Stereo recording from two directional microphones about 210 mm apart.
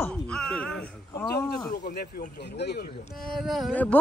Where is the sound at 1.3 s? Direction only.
50° left (ahead or behind).